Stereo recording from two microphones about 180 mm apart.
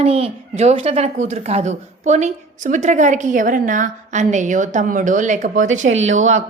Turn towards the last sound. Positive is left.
turn(degrees=-40)  # may be behind; listen again after turning